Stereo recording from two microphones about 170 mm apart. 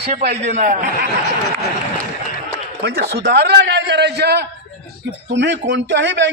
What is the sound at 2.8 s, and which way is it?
A man's voice, 80° right.